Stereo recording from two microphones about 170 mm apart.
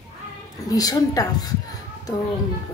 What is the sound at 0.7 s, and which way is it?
Speech, 20° left (ahead or behind).